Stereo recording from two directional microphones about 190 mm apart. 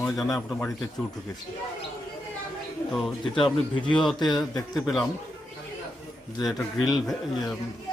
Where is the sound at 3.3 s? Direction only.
25° left (ahead or behind).